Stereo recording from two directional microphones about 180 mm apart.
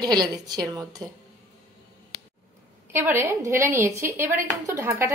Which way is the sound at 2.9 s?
15° right (ahead or behind).